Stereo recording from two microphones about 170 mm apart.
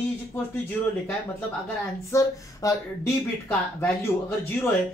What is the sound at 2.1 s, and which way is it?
Speech, 20° left (ahead or behind).